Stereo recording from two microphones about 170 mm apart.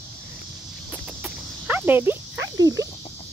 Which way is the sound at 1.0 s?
5° right (ahead or behind).